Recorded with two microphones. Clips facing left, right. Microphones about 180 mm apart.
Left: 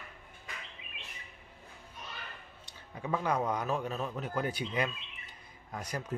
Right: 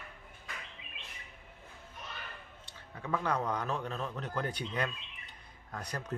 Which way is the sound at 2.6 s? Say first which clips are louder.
Left 3 dB; 15° left (ahead or behind).